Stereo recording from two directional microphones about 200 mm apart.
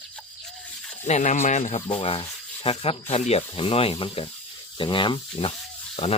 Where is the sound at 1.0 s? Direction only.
35° left (ahead or behind).